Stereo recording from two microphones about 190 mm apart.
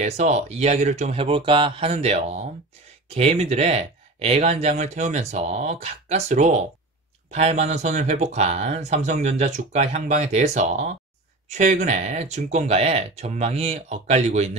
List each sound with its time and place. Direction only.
0.0 s speech: 35° right (ahead or behind)